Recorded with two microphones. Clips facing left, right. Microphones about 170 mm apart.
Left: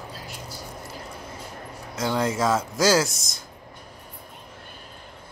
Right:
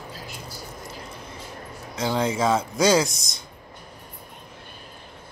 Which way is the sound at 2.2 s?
Centre (ahead or behind).